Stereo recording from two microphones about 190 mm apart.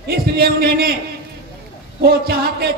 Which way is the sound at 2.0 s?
55° right (ahead or behind).